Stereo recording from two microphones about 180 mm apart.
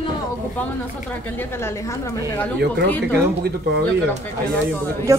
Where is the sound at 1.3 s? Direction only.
15° left (ahead or behind).